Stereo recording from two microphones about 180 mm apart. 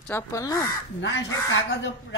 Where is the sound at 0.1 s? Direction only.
20° left (ahead or behind).